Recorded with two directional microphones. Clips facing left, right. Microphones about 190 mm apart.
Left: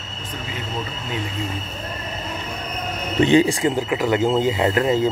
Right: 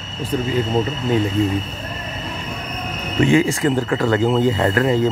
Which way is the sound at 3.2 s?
25° left (ahead or behind).